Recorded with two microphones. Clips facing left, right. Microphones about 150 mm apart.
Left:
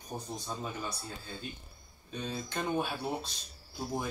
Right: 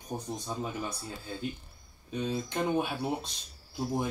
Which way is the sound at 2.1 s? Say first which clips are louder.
Right 5 dB; 15° right (ahead or behind).